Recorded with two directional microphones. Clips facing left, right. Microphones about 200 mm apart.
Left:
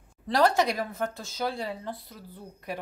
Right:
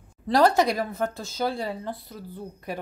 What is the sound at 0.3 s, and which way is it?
A woman's voice, 35° right (ahead or behind).